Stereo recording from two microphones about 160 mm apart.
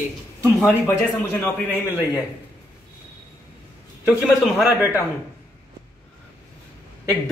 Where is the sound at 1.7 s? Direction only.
15° left (ahead or behind).